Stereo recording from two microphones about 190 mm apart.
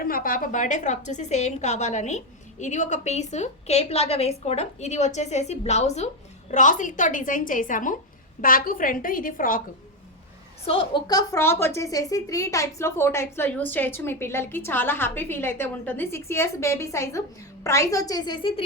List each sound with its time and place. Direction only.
0.0 s a woman's voice: 50° left (ahead or behind)
10.7 s a woman's voice: 25° left (ahead or behind)